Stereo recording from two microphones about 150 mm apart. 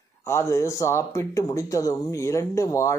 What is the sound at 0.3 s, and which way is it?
Speech, 20° left (ahead or behind).